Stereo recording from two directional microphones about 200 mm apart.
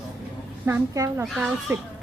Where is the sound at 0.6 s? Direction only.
15° right (ahead or behind).